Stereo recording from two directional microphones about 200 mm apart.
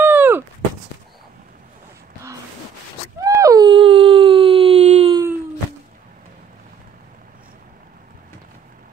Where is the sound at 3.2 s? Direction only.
15° right (ahead or behind).